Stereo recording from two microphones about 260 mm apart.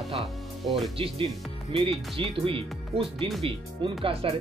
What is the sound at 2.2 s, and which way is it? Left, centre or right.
Speech, right.